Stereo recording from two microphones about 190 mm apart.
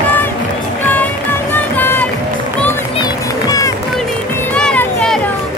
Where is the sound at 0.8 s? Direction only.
10° left (ahead or behind).